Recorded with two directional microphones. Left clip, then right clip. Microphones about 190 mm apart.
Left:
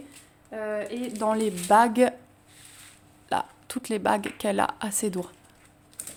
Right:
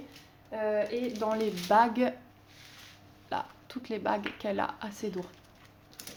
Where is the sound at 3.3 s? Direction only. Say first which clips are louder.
Left 7 dB; 50° left (ahead or behind).